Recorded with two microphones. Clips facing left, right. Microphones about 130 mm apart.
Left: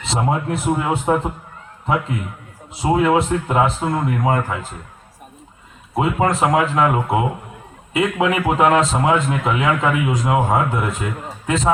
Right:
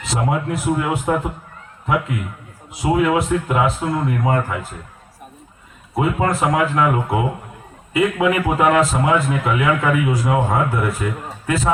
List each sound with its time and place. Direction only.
0.0 s a man's voice: 25° left (ahead or behind)
2.7 s a man's voice: 30° left (ahead or behind)
5.9 s a man's voice: 20° left (ahead or behind)